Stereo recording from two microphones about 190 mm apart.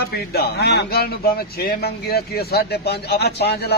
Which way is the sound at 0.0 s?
55° left (ahead or behind).